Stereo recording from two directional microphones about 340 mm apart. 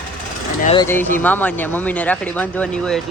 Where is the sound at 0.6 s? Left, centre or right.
Centre.